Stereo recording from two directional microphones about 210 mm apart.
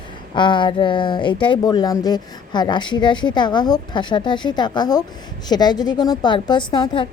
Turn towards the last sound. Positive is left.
turn(degrees=20)  # may be behind; listen again after turning